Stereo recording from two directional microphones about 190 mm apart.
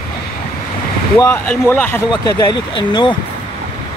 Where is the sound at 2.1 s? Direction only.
20° left (ahead or behind).